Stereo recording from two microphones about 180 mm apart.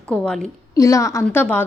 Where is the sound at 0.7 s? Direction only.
15° left (ahead or behind).